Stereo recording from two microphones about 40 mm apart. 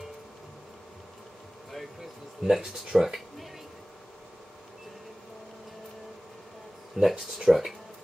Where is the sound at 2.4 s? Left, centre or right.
Centre.